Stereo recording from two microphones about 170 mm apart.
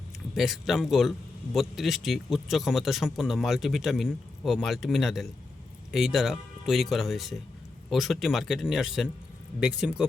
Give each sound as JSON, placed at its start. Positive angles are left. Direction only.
{"t": 0.3, "sound": "a man's voice", "side_deg": 0}